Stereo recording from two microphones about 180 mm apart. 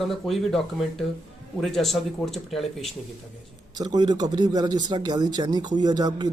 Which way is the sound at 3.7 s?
20° right (ahead or behind).